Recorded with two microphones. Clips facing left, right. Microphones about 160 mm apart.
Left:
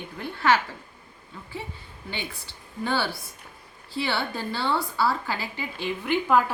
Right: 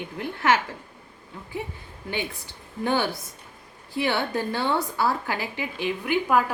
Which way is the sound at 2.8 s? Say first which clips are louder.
Right 3 dB; 15° right (ahead or behind).